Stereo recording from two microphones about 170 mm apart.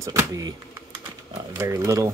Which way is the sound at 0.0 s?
20° right (ahead or behind).